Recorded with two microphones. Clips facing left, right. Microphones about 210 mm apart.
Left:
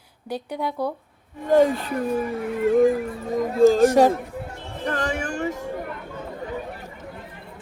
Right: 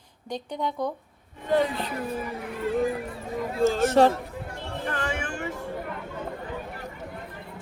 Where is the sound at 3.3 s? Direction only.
40° left (ahead or behind).